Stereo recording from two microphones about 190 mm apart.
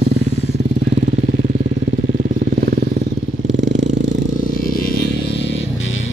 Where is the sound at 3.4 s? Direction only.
70° right (ahead or behind).